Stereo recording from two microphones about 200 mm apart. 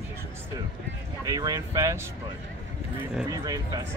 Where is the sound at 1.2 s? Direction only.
15° right (ahead or behind).